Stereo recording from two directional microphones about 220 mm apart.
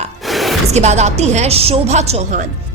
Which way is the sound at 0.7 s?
30° right (ahead or behind).